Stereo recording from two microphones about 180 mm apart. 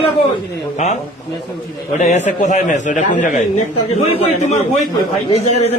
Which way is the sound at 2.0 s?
40° left (ahead or behind).